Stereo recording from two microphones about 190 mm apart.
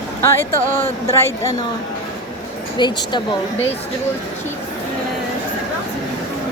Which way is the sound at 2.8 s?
25° left (ahead or behind).